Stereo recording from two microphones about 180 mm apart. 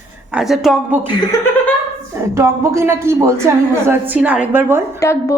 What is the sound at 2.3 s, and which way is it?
A woman's voice, 15° right (ahead or behind).